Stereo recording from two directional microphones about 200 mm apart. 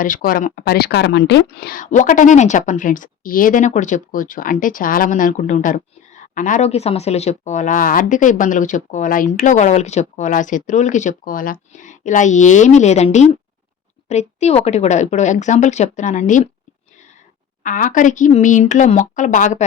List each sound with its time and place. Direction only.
0.0 s speech: 45° left (ahead or behind)
17.6 s speech: 40° left (ahead or behind)